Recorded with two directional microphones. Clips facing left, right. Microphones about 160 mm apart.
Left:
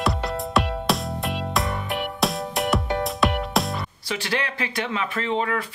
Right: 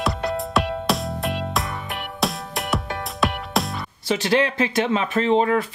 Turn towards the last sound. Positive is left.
turn(degrees=-30)  # may be behind; listen again after turning